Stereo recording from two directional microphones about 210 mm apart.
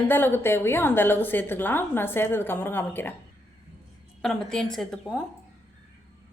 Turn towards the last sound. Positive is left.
turn(degrees=0)  # may be behind; listen again after turning